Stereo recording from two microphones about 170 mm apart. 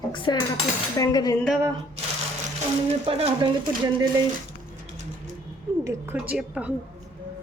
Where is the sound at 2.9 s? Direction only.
35° right (ahead or behind).